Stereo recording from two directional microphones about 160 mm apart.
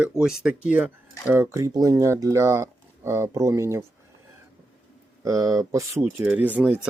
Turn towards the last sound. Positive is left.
turn(degrees=-10)  # may be behind; listen again after turning